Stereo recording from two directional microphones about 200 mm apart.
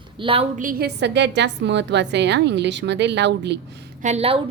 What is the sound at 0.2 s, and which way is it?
Speech, 25° right (ahead or behind).